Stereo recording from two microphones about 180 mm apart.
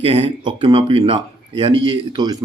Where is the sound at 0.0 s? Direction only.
35° right (ahead or behind).